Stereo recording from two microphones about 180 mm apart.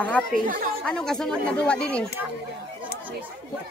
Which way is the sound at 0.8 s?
5° left (ahead or behind).